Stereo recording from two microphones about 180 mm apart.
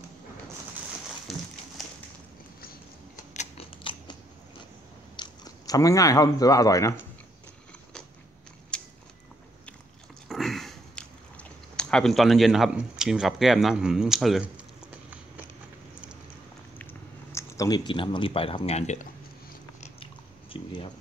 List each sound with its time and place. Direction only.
1.3 s a sound: centre (ahead or behind)
3.3 s scissors: 30° left (ahead or behind)
5.1 s speech: 25° left (ahead or behind)
8.7 s a sound: 5° left (ahead or behind)
10.2 s chewing: centre (ahead or behind)
17.3 s speech: 15° left (ahead or behind); by 18.9 s 35° left (ahead or behind)
19.8 s biting: 30° left (ahead or behind)